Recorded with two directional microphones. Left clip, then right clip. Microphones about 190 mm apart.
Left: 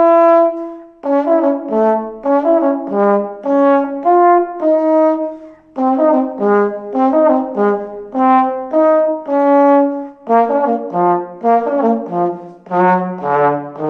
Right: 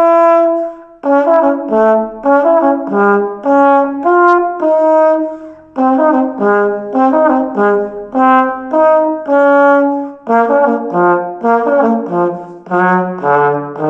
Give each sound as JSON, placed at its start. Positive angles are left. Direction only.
{"t": 0.0, "sound": "brass instrument", "side_deg": 15}
{"t": 12.7, "sound": "trombone", "side_deg": 15}